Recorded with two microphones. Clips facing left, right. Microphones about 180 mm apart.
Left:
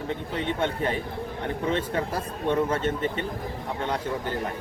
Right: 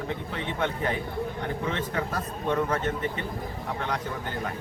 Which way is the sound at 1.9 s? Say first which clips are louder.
Left 2 dB; 30° left (ahead or behind).